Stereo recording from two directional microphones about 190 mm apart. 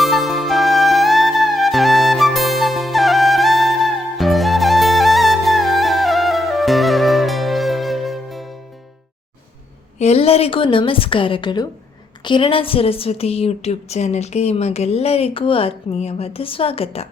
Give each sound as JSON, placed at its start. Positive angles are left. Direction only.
{"t": 0.0, "sound": "music", "side_deg": 0}
{"t": 10.0, "sound": "a woman's voice", "side_deg": 35}